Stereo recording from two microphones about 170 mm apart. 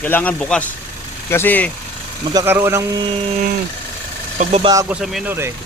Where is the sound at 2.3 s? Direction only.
15° right (ahead or behind).